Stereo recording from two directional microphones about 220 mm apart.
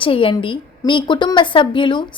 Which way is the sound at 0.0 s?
25° left (ahead or behind).